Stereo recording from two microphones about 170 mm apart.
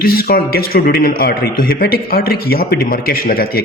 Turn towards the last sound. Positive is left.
turn(degrees=60)  # may be behind; listen again after turning